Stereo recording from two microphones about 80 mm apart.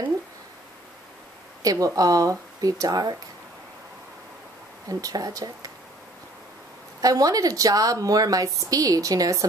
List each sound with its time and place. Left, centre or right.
1.6 s a woman's voice: right
4.8 s a woman's voice: right
7.0 s a woman's voice: right